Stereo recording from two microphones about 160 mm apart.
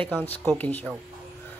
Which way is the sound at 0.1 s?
10° left (ahead or behind).